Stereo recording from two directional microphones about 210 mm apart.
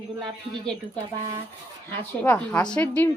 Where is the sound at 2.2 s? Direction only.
10° left (ahead or behind).